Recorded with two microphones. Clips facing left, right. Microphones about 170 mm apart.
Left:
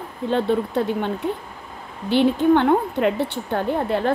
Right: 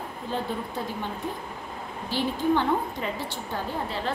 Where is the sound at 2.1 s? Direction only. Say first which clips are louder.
Left 9 dB; 65° left (ahead or behind).